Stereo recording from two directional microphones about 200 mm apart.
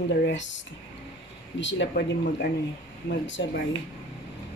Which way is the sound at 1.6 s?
65° left (ahead or behind).